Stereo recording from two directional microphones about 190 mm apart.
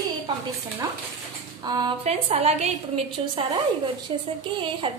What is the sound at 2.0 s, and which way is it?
A woman's voice, 35° right (ahead or behind).